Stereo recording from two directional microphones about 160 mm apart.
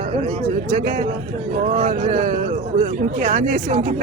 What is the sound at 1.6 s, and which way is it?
Speech, 50° right (ahead or behind).